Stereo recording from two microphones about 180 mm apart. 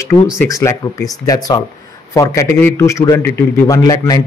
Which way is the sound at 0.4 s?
15° left (ahead or behind).